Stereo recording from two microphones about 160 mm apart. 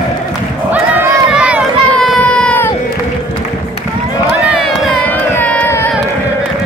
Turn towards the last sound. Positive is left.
turn(degrees=10)  # may be behind; listen again after turning